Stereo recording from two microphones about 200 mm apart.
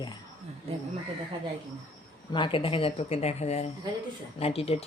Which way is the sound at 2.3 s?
25° left (ahead or behind).